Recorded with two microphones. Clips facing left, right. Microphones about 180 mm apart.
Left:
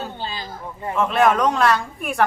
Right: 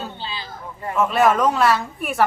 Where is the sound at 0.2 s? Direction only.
45° left (ahead or behind).